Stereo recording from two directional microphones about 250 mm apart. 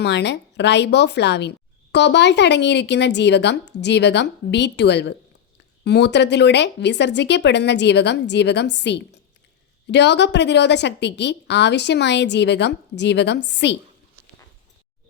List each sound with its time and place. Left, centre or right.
0.0 s a woman's voice: left